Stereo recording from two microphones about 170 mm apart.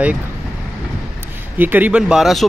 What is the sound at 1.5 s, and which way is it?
Speech, 10° right (ahead or behind).